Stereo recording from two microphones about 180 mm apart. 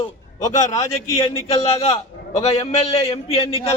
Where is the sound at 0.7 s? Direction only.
15° left (ahead or behind).